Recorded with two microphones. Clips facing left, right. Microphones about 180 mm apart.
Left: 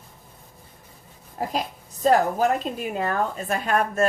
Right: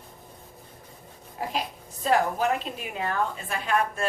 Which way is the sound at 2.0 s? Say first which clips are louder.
Left 4 dB; 40° left (ahead or behind).